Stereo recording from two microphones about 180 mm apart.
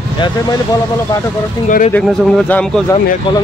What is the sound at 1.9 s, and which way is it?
Speech, 10° left (ahead or behind).